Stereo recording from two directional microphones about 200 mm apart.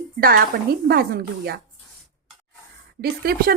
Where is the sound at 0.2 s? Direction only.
50° right (ahead or behind).